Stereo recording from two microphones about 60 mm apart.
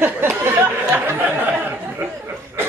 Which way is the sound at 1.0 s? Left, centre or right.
Right.